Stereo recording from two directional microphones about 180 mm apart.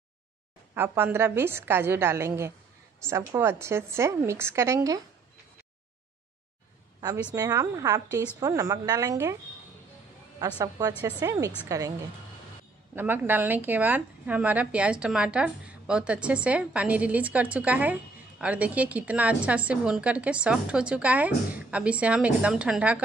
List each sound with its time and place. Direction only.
0.7 s a woman's voice: 15° right (ahead or behind)
7.3 s a woman's voice: 20° right (ahead or behind)
11.1 s a woman's voice: 20° right (ahead or behind)
12.9 s a woman's voice: 10° right (ahead or behind)